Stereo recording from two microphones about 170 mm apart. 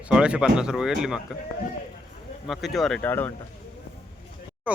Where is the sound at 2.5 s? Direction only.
Centre (ahead or behind).